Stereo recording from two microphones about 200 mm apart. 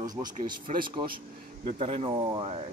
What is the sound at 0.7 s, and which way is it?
Speech, 35° right (ahead or behind).